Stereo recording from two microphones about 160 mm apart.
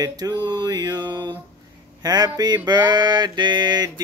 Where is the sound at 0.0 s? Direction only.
25° right (ahead or behind).